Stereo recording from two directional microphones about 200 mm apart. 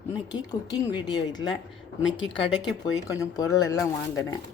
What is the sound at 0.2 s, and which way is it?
Speech, 20° left (ahead or behind).